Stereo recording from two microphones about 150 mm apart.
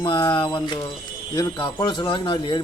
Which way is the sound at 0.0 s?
25° left (ahead or behind).